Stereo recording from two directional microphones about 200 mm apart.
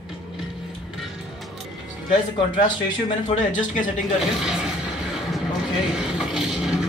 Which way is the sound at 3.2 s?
40° left (ahead or behind).